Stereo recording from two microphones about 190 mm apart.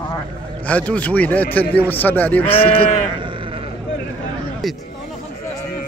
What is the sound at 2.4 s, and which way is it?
Speech, 30° left (ahead or behind).